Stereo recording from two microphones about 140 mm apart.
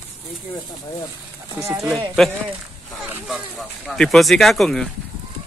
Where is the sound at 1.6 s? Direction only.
20° right (ahead or behind).